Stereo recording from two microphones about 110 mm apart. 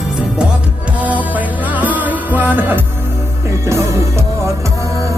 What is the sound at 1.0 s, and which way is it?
Music, 15° right (ahead or behind).